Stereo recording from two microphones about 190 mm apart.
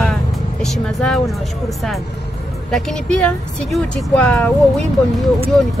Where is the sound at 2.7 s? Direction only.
5° left (ahead or behind).